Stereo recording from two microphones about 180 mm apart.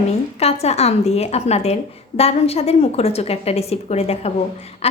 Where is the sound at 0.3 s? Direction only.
35° left (ahead or behind).